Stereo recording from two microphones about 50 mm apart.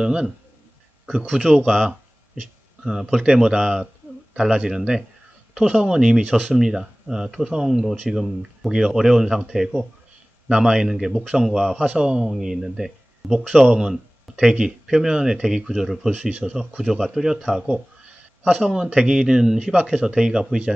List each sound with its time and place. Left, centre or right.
0.0 s speech: centre
1.3 s speech: centre
1.9 s a sound: centre
3.1 s speech: centre
6.2 s speech: right
6.5 s speech: centre
11.8 s speech: centre
16.1 s speech: right